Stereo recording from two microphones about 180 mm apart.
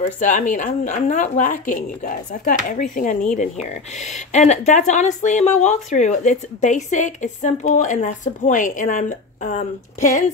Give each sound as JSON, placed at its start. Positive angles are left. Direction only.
{"t": 0.0, "sound": "a woman's voice", "side_deg": 45}